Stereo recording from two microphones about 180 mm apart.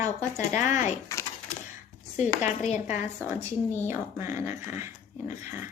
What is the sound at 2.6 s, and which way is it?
Speech, 40° left (ahead or behind).